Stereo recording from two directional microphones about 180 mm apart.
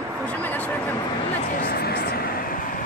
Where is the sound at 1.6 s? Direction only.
60° left (ahead or behind).